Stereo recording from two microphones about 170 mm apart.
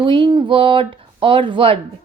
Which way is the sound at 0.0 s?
30° right (ahead or behind).